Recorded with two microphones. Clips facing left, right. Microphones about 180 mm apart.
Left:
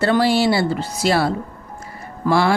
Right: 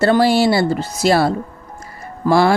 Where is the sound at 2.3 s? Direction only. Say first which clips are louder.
Right 3 dB; 40° right (ahead or behind).